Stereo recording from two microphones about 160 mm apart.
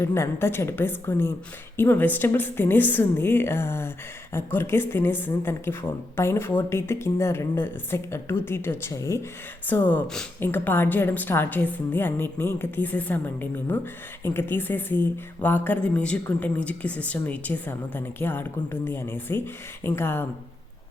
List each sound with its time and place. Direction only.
0.0 s a woman's voice: 15° left (ahead or behind)